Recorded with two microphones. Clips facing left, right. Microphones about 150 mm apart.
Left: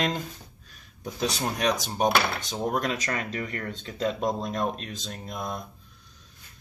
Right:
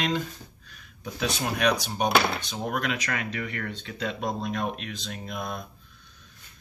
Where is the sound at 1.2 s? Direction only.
35° left (ahead or behind).